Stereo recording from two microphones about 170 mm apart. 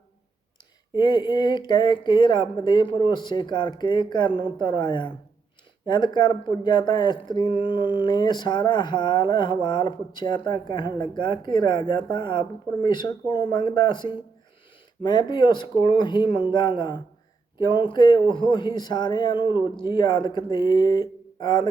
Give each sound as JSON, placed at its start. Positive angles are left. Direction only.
{"t": 0.9, "sound": "speech", "side_deg": 25}